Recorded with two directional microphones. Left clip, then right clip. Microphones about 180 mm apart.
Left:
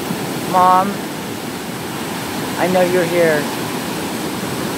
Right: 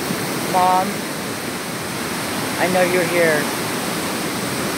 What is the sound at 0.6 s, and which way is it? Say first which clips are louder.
Speech: left 4 dB; 15° left (ahead or behind).